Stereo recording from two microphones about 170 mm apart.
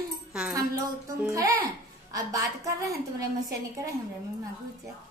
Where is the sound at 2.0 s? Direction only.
20° right (ahead or behind).